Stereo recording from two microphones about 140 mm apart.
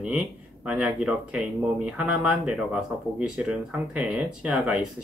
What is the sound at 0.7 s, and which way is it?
Speech, 5° right (ahead or behind).